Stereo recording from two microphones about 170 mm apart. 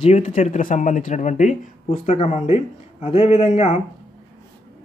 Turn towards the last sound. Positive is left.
turn(degrees=40)  # may be behind; listen again after turning